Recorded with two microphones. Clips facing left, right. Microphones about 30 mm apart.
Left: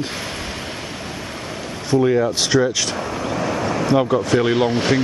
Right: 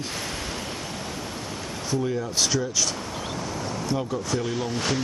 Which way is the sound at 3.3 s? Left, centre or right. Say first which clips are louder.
Left 12 dB; left.